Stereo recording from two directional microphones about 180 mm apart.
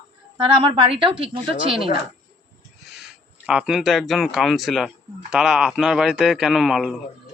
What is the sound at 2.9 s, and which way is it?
A man's voice, centre (ahead or behind).